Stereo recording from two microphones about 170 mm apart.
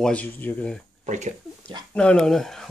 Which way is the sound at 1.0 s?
45° right (ahead or behind).